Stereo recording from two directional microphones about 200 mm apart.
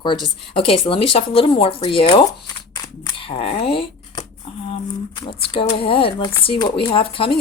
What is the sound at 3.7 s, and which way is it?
Shuffling cards, 25° left (ahead or behind).